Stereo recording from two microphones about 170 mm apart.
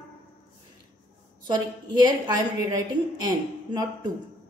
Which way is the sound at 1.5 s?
25° right (ahead or behind).